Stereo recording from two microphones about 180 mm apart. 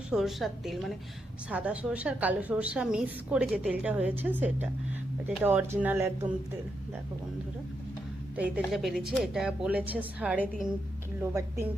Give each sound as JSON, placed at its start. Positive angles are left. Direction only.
{"t": 0.1, "sound": "a woman's voice", "side_deg": 0}
{"t": 8.4, "sound": "a woman's voice", "side_deg": -5}